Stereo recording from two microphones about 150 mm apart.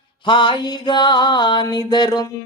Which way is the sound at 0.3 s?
35° left (ahead or behind).